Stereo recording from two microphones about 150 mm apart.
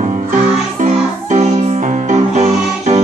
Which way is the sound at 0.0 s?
55° right (ahead or behind).